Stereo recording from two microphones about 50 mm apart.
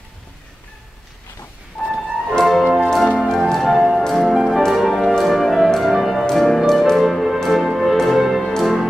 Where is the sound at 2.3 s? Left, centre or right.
Centre.